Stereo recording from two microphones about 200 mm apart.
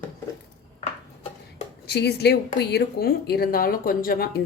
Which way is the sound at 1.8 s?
55° left (ahead or behind).